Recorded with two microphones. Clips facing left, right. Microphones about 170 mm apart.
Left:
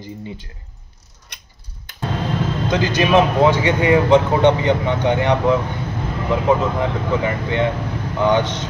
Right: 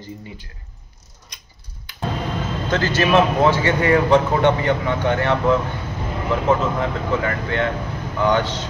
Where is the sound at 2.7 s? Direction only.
15° left (ahead or behind).